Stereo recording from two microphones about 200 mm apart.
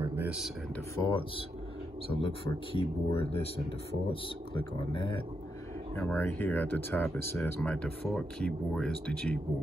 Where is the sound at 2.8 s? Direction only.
30° left (ahead or behind).